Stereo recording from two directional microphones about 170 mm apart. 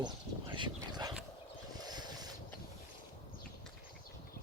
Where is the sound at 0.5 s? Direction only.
25° right (ahead or behind).